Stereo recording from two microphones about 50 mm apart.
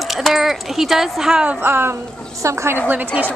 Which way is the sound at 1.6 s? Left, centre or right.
Right.